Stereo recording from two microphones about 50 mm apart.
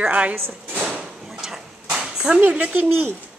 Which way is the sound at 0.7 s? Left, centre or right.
Right.